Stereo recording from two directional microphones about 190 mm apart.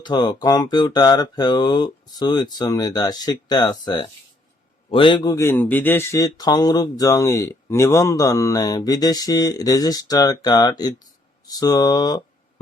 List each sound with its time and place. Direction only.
0.0 s speech: 25° left (ahead or behind)